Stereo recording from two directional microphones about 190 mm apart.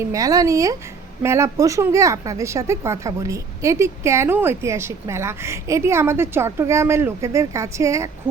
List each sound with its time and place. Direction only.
0.0 s speech: 15° right (ahead or behind)